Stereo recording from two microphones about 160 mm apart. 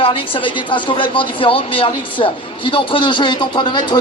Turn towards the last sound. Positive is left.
turn(degrees=30)  # may be behind; listen again after turning